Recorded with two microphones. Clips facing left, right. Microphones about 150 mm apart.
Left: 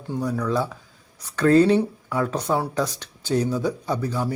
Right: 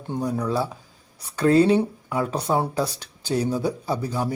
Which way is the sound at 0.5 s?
10° right (ahead or behind).